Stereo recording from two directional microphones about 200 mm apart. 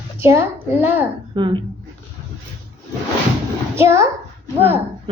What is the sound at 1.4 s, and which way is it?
Speech, 25° right (ahead or behind).